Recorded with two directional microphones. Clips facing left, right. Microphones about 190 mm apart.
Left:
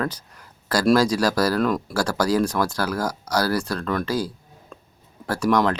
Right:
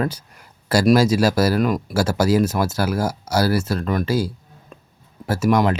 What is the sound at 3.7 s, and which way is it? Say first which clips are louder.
Speech: right 3 dB; 20° right (ahead or behind).